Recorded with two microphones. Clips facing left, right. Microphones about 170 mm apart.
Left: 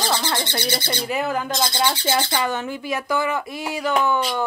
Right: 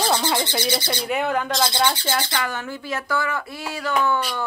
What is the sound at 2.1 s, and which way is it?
Speech, 20° left (ahead or behind).